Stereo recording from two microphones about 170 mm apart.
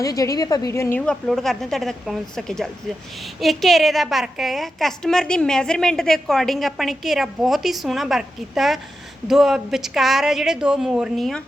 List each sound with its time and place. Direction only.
0.0 s a woman's voice: 20° left (ahead or behind); by 11.4 s centre (ahead or behind)